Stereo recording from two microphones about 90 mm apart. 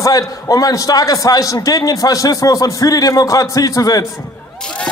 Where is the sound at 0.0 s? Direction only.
40° left (ahead or behind).